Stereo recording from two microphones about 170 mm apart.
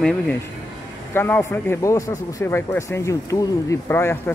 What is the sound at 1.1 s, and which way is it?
Speech, 15° left (ahead or behind).